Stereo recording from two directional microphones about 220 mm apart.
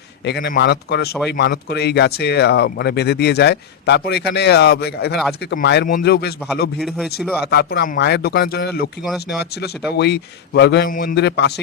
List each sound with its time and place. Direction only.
0.3 s speech: 50° left (ahead or behind)
6.8 s speech: centre (ahead or behind)
7.5 s speech: 50° left (ahead or behind)
9.0 s speech: centre (ahead or behind)
10.0 s speech: 50° left (ahead or behind)